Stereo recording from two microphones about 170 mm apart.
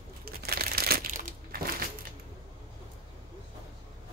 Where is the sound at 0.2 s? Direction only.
65° right (ahead or behind).